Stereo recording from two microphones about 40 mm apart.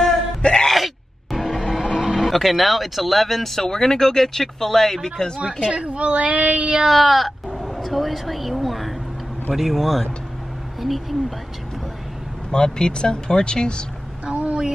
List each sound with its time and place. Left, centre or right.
0.4 s a sound: left
0.7 s music: centre
2.0 s speech: centre
5.6 s speech: right
6.9 s speech: centre
12.4 s speech: centre
14.2 s a sound: right